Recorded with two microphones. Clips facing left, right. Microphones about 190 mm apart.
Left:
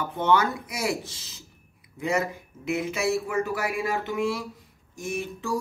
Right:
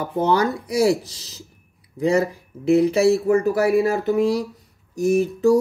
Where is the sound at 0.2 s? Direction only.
35° right (ahead or behind).